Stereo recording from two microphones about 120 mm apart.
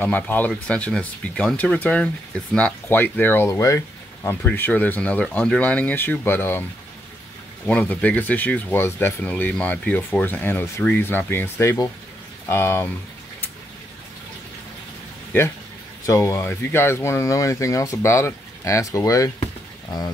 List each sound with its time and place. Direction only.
0.0 s speech: 15° left (ahead or behind)
7.6 s speech: 10° left (ahead or behind)
16.1 s speech: 25° left (ahead or behind)